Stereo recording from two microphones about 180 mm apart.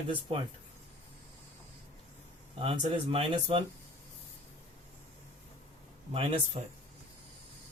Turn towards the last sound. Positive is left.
turn(degrees=-30)  # may be behind; listen again after turning